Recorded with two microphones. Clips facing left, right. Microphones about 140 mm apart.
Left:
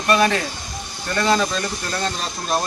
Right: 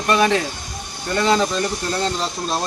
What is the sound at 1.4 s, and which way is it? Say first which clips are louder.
Speech: right 3 dB; 20° right (ahead or behind).